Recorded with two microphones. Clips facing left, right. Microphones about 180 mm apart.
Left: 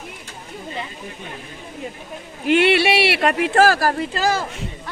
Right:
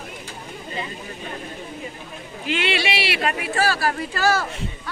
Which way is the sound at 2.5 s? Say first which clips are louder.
Left 8 dB; 60° left (ahead or behind).